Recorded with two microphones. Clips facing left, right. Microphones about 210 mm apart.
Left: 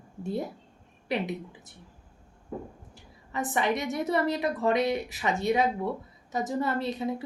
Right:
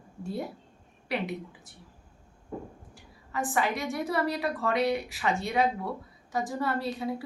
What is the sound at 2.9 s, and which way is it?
A woman's voice, 20° left (ahead or behind).